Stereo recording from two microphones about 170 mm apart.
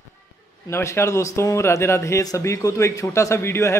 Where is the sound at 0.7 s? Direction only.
15° left (ahead or behind).